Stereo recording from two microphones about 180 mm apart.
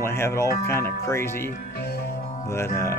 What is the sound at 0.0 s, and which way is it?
Speech, 15° left (ahead or behind).